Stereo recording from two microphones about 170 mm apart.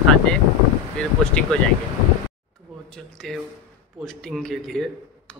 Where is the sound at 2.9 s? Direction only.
Centre (ahead or behind).